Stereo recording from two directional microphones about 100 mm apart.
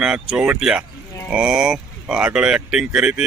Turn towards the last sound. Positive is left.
turn(degrees=-10)  # may be behind; listen again after turning